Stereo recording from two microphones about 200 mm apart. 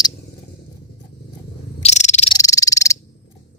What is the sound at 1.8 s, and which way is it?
Cricket, 35° left (ahead or behind).